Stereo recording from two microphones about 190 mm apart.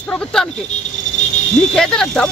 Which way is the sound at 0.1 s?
5° left (ahead or behind).